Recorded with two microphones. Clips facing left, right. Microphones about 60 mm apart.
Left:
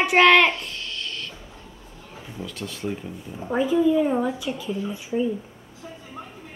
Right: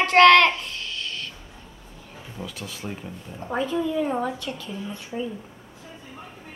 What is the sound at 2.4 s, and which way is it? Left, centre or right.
A woman's voice, centre.